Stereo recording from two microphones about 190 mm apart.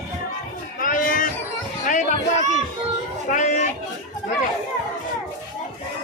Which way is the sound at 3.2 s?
40° left (ahead or behind).